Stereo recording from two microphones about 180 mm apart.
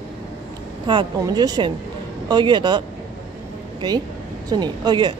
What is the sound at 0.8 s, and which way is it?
A woman's voice, 25° right (ahead or behind).